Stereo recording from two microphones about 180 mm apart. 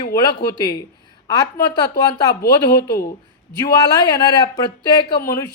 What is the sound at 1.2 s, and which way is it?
Speech, 20° left (ahead or behind).